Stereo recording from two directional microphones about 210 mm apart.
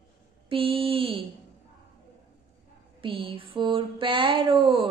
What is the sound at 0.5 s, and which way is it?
Speech, 25° right (ahead or behind).